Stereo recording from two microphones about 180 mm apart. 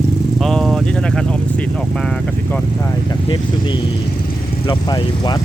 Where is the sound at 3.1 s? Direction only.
25° left (ahead or behind).